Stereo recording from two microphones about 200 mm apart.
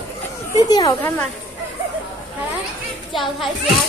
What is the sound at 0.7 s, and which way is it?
Speech, 20° left (ahead or behind).